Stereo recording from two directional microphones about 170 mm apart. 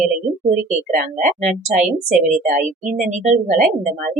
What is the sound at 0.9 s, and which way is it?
A woman's voice, 45° right (ahead or behind).